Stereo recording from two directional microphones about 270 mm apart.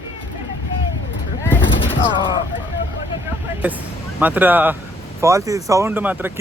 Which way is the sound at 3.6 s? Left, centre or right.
Centre.